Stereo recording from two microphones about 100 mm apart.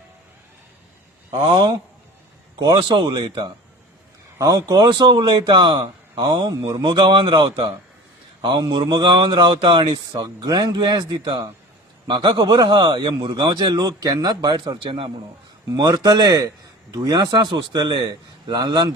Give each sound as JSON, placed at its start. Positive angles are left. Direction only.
{"t": 1.3, "sound": "speech", "side_deg": -65}
{"t": 2.6, "sound": "a man's voice", "side_deg": -50}
{"t": 4.4, "sound": "a man's voice", "side_deg": -35}
{"t": 6.5, "sound": "a man's voice", "side_deg": -40}